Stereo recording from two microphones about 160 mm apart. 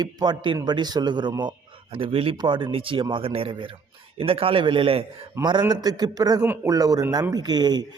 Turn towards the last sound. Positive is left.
turn(degrees=-25)  # may be behind; listen again after turning